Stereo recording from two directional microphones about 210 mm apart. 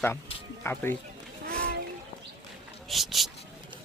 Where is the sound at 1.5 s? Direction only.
50° right (ahead or behind).